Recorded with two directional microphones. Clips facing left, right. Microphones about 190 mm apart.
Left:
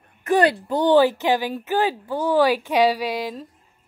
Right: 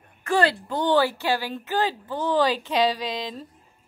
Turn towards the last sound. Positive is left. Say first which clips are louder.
# left 4 dB
turn(degrees=10)  # may be behind; listen again after turning